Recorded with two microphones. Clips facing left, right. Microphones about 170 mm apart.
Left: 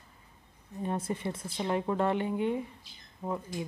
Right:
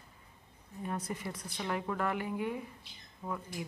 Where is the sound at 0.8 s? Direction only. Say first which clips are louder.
Left 5 dB; 25° left (ahead or behind).